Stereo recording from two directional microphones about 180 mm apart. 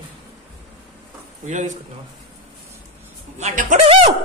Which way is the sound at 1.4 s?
40° right (ahead or behind).